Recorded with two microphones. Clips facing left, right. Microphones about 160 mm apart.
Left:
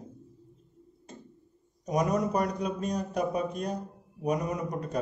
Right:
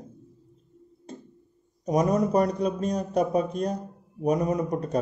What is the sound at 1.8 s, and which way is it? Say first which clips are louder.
A man's voice: right 4 dB; 35° right (ahead or behind).